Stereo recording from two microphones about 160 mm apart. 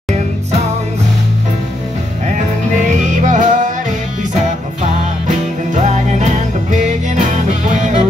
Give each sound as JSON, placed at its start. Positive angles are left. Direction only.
{"t": 3.3, "sound": "music", "side_deg": -50}
{"t": 5.8, "sound": "music", "side_deg": -45}